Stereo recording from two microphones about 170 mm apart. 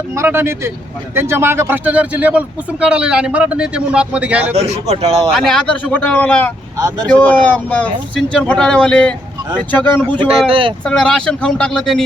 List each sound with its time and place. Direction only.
0.2 s a man's voice: 15° right (ahead or behind)
4.4 s speech: 35° right (ahead or behind)
5.3 s speech: 5° left (ahead or behind)
6.7 s speech: 20° right (ahead or behind)
7.1 s speech: 10° left (ahead or behind)
10.5 s speech: 30° right (ahead or behind)
10.8 s speech: 5° left (ahead or behind)